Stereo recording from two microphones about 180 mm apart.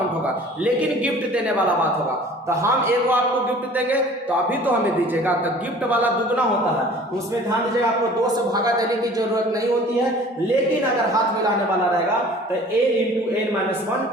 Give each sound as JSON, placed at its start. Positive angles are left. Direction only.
{"t": 2.5, "sound": "a man's voice", "side_deg": -15}
{"t": 5.9, "sound": "a man's voice", "side_deg": -10}